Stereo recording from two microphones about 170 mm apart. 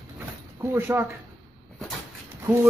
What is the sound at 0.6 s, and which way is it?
Speech, 20° right (ahead or behind).